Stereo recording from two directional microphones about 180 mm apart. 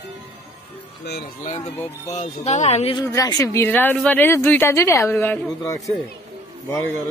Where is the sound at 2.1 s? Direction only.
40° left (ahead or behind).